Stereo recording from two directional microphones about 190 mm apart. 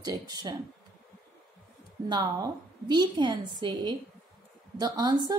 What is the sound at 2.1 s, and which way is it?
A woman's voice, 20° right (ahead or behind).